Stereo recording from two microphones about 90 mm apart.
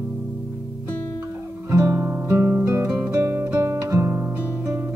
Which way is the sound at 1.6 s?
30° right (ahead or behind).